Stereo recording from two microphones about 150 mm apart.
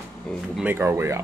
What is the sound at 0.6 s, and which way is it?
Speech, 15° right (ahead or behind).